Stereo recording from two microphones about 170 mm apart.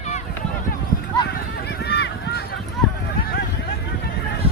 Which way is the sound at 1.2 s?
70° left (ahead or behind).